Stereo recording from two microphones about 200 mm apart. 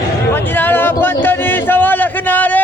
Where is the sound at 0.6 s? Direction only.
10° left (ahead or behind).